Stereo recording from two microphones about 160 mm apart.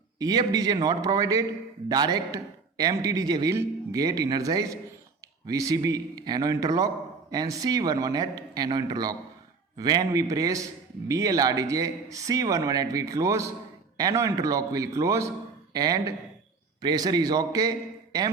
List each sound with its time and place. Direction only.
0.2 s a man's voice: 25° right (ahead or behind)